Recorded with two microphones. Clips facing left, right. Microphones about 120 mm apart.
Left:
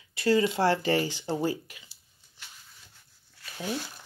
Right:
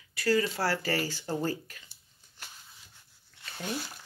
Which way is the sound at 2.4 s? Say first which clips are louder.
Right 2 dB; 45° right (ahead or behind).